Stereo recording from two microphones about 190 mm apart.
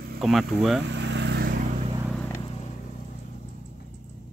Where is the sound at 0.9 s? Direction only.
70° right (ahead or behind).